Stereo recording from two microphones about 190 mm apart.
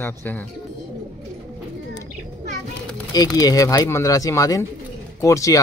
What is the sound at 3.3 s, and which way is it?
Speech, 20° left (ahead or behind).